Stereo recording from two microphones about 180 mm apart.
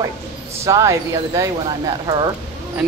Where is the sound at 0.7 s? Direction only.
15° right (ahead or behind).